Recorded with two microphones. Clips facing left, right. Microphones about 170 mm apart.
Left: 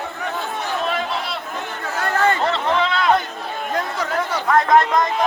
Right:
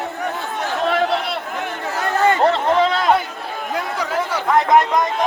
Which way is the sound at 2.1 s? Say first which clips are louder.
Right 2 dB; 20° right (ahead or behind).